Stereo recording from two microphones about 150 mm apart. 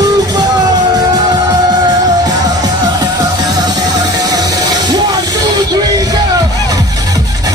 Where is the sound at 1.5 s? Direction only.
25° right (ahead or behind).